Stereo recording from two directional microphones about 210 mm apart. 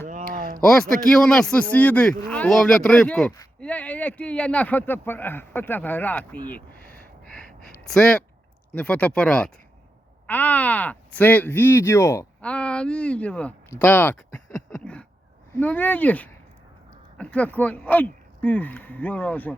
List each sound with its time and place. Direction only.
0.1 s a sound: 40° right (ahead or behind)
0.6 s speech: centre (ahead or behind)
7.3 s gasp: 5° left (ahead or behind)
7.9 s speech: 5° left (ahead or behind)